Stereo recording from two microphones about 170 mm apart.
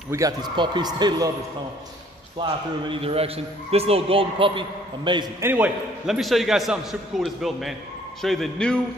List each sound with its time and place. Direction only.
0.1 s a man's voice: 20° right (ahead or behind)
2.3 s a man's voice: 30° right (ahead or behind)
5.4 s a man's voice: 10° right (ahead or behind); by 8.8 s 5° left (ahead or behind)